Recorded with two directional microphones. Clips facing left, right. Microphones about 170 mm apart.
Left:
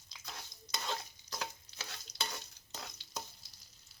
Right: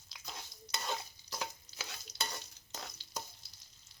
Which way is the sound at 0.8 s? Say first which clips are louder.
Right 1 dB; 10° right (ahead or behind).